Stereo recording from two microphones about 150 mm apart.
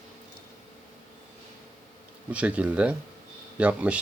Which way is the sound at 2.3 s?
10° right (ahead or behind).